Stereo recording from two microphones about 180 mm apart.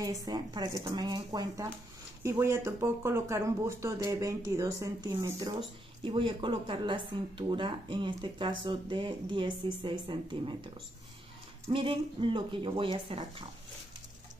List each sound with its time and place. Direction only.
0.0 s speech: 20° right (ahead or behind)